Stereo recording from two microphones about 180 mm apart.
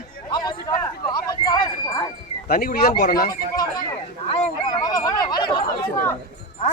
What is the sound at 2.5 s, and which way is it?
Speech, 60° left (ahead or behind).